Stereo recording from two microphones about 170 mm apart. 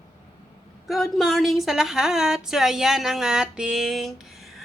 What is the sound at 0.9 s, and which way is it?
Speech, centre (ahead or behind).